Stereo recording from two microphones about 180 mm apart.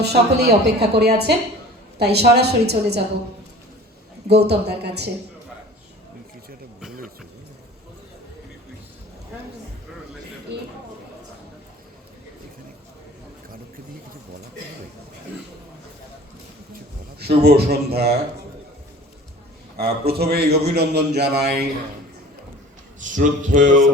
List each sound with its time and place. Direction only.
0.0 s a man's voice: 65° right (ahead or behind)
4.3 s a man's voice: 65° right (ahead or behind)
10.5 s a sound: 70° right (ahead or behind)
17.2 s a man's voice: 65° right (ahead or behind)
19.7 s a man's voice: 60° right (ahead or behind)
23.0 s a sound: 45° right (ahead or behind)